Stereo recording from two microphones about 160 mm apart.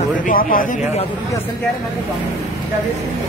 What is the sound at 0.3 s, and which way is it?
Speech, 60° left (ahead or behind).